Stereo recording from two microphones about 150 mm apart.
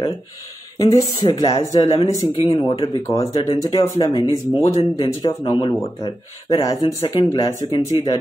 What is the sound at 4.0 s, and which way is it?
Speech, 30° left (ahead or behind).